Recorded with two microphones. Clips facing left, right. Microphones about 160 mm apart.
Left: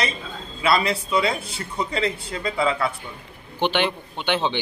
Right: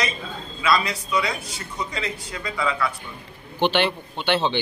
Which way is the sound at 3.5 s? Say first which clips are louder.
Right 1 dB; 10° left (ahead or behind).